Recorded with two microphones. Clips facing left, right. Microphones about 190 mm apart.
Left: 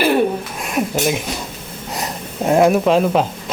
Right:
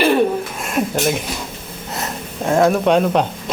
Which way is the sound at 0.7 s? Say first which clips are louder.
Even; centre (ahead or behind).